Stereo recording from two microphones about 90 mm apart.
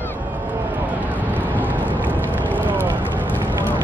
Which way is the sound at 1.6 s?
20° right (ahead or behind).